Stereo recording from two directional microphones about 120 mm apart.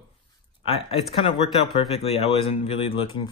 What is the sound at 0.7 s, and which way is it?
Speech, 50° left (ahead or behind).